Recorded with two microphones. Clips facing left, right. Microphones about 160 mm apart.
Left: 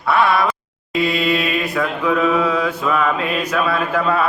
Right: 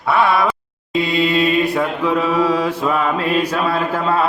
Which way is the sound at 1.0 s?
25° right (ahead or behind).